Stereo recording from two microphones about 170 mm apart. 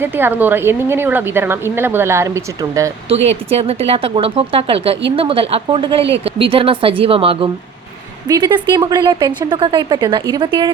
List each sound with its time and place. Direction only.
0.0 s a woman's voice: 10° right (ahead or behind)
3.2 s a woman's voice: 35° right (ahead or behind)